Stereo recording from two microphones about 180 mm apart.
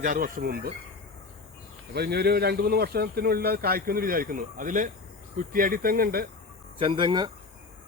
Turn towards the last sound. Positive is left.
turn(degrees=-25)  # may be behind; listen again after turning